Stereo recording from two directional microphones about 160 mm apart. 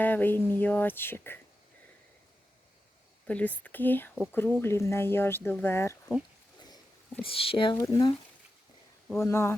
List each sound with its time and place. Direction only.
0.0 s speech: 10° left (ahead or behind)
3.2 s speech: 10° left (ahead or behind)
7.2 s speech: 35° left (ahead or behind)
7.8 s speech: 20° left (ahead or behind)